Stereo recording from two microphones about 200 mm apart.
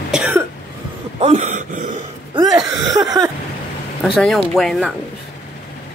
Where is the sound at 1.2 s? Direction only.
35° right (ahead or behind).